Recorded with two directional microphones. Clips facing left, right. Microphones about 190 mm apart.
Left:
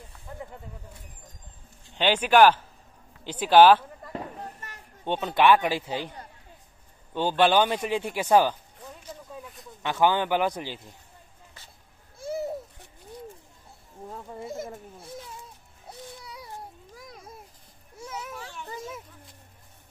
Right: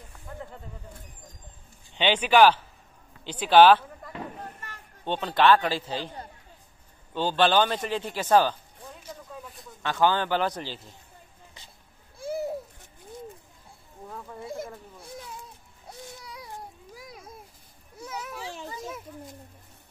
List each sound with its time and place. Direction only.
2.0 s speech: 10° left (ahead or behind)
5.0 s speech: 15° left (ahead or behind)
7.2 s speech: 15° left (ahead or behind)
9.8 s speech: 15° left (ahead or behind)
12.2 s a sound: centre (ahead or behind)
14.0 s a sound: 25° left (ahead or behind)
16.9 s children playing: 5° right (ahead or behind)